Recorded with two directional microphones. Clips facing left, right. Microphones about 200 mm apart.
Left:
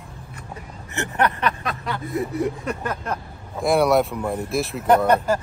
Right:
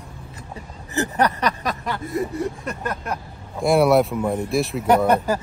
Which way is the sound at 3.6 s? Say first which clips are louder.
Right 2 dB; centre (ahead or behind).